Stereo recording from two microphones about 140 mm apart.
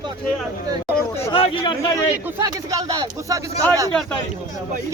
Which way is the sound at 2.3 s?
25° right (ahead or behind).